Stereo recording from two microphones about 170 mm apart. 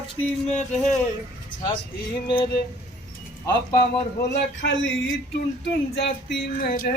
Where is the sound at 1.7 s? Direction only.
30° left (ahead or behind).